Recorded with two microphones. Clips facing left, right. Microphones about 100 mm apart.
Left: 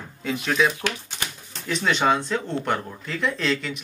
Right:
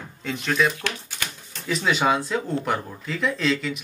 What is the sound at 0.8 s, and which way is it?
Typewriter, 20° left (ahead or behind).